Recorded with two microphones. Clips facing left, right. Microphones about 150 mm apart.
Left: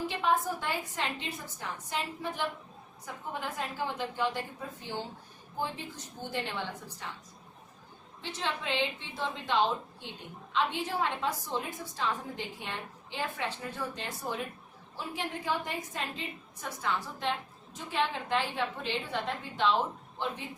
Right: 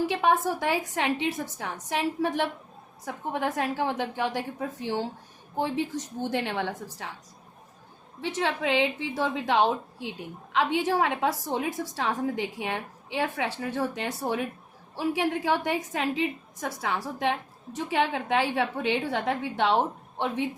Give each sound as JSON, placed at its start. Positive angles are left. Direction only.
{"t": 0.0, "sound": "a woman's voice", "side_deg": -90}
{"t": 8.2, "sound": "a woman's voice", "side_deg": -85}
{"t": 10.5, "sound": "a woman's voice", "side_deg": -90}